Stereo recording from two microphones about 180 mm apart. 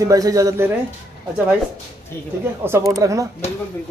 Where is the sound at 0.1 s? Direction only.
20° right (ahead or behind).